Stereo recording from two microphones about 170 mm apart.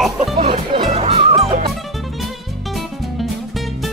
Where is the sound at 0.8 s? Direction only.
35° right (ahead or behind).